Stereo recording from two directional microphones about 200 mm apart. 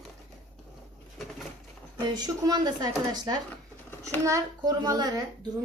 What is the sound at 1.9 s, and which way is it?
Speech, 20° right (ahead or behind).